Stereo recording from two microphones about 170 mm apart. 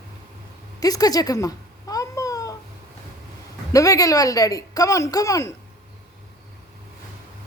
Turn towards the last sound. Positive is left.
turn(degrees=20)  # may be behind; listen again after turning